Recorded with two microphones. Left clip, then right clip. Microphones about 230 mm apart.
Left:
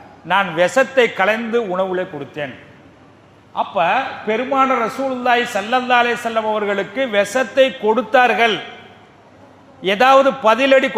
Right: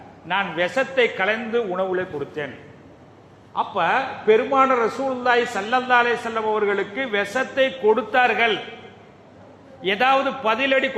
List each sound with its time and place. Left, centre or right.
0.3 s a man's voice: left
3.5 s a man's voice: left
9.8 s a man's voice: left